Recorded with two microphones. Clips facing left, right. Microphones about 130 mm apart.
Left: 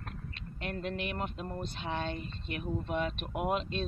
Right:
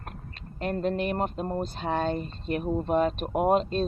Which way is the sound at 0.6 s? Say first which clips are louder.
Right 9 dB; 40° right (ahead or behind).